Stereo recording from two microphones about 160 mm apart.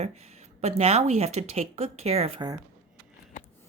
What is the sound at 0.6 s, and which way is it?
Speech, 40° right (ahead or behind).